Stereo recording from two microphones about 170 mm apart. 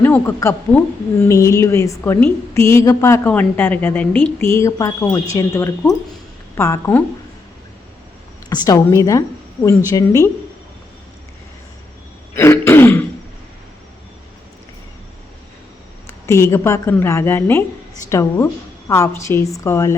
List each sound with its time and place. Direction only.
0.0 s a woman's voice: 15° left (ahead or behind)
8.4 s a woman's voice: 25° left (ahead or behind)
12.3 s throat clearing: 15° left (ahead or behind)
16.2 s a woman's voice: 15° left (ahead or behind)